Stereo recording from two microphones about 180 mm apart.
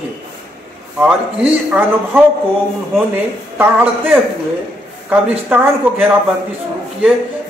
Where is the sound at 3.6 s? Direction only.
10° right (ahead or behind).